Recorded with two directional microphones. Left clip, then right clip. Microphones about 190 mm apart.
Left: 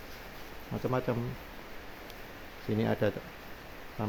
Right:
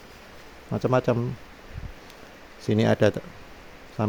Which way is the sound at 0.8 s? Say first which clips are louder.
Right 9 dB; 50° right (ahead or behind).